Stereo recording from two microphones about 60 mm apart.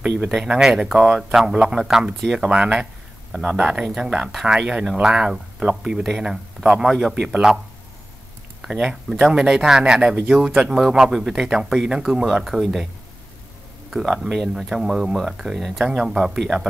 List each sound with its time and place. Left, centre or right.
0.3 s speech: centre
2.4 s speech: centre
3.3 s speech: centre
7.2 s speech: centre
8.6 s speech: centre
12.5 s speech: right
13.8 s speech: centre